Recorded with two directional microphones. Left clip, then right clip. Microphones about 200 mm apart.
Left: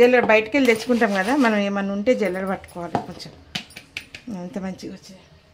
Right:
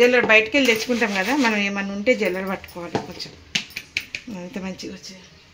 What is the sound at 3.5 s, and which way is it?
Finger snapping, 20° left (ahead or behind).